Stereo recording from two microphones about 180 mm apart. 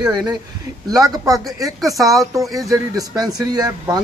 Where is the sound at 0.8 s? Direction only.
20° right (ahead or behind).